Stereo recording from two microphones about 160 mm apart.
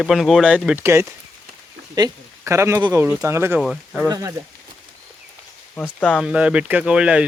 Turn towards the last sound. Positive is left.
turn(degrees=-5)  # may be behind; listen again after turning